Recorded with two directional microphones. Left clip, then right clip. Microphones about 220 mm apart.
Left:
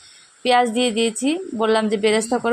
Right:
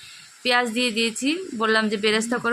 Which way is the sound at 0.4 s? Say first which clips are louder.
Left 4 dB; 10° left (ahead or behind).